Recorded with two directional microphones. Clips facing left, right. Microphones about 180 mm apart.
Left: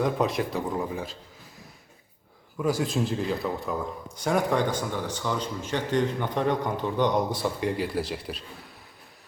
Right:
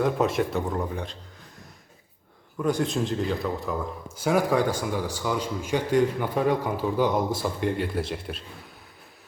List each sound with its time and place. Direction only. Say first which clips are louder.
0.0 s a man's voice: right 2 dB; centre (ahead or behind)
2.6 s a man's voice: right 1 dB; centre (ahead or behind)